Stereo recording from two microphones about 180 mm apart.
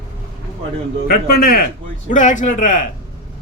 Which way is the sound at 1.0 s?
55° left (ahead or behind).